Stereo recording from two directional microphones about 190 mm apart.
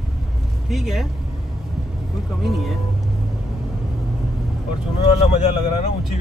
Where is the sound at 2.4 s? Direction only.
Centre (ahead or behind).